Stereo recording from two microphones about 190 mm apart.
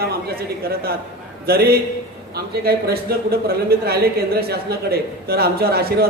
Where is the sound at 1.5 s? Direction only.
55° right (ahead or behind).